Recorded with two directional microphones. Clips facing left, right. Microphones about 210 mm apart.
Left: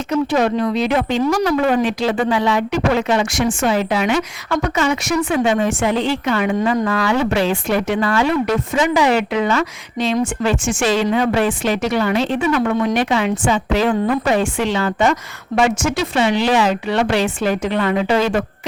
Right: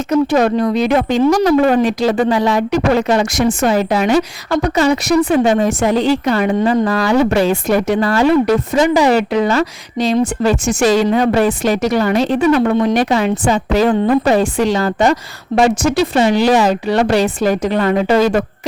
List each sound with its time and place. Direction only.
0.1 s speech: 45° right (ahead or behind)
1.2 s speech: 30° right (ahead or behind)
1.5 s speech: 40° right (ahead or behind)